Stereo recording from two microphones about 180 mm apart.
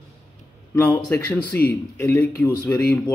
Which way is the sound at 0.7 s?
10° left (ahead or behind).